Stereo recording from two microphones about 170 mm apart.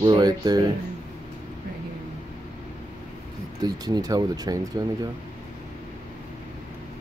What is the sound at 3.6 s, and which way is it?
Speech, 25° right (ahead or behind).